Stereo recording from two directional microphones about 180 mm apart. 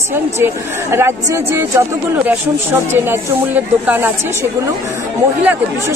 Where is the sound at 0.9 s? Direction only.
15° right (ahead or behind).